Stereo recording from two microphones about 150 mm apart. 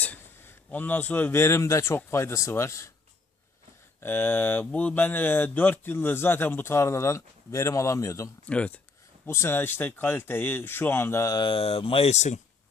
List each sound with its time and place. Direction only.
0.0 s speech: 10° left (ahead or behind)
4.0 s speech: 15° left (ahead or behind)
8.4 s speech: 10° left (ahead or behind); by 12.4 s 50° left (ahead or behind)